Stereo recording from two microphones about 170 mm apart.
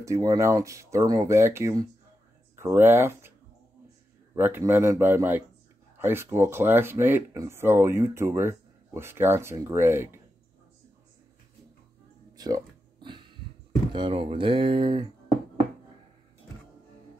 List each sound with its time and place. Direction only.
0.0 s speech: 20° right (ahead or behind)
4.4 s speech: 15° right (ahead or behind)
12.4 s a sound: 20° right (ahead or behind)
13.9 s speech: 30° right (ahead or behind)